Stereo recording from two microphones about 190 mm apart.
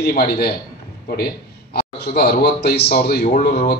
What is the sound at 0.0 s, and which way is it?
Speech, 55° left (ahead or behind).